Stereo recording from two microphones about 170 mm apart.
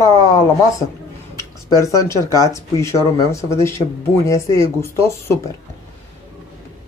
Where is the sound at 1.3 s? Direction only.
20° left (ahead or behind).